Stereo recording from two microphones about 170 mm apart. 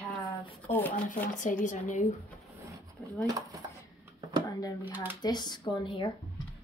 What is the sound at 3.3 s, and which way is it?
Speech, 20° right (ahead or behind).